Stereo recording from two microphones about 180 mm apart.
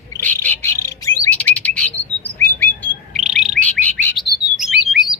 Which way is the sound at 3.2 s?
Centre (ahead or behind).